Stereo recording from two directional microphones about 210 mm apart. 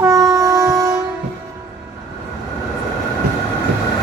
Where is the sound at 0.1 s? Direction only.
15° right (ahead or behind).